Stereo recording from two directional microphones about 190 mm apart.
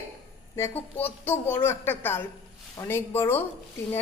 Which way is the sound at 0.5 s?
10° left (ahead or behind).